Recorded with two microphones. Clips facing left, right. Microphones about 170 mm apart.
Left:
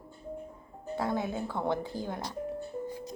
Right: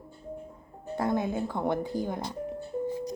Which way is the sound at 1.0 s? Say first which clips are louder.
Right 4 dB; 15° right (ahead or behind).